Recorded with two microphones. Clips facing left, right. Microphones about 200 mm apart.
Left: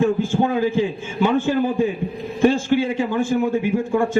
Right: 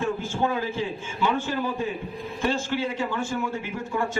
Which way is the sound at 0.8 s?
50° left (ahead or behind).